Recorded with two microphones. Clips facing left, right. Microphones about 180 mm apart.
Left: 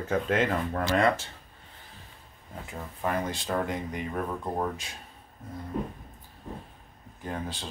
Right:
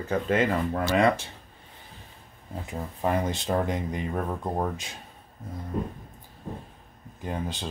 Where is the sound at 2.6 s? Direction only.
20° right (ahead or behind).